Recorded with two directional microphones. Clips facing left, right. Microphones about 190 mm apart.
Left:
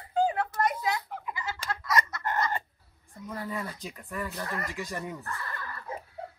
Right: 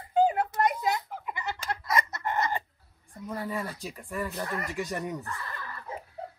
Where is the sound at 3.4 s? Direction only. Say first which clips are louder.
Right 1 dB; 10° right (ahead or behind).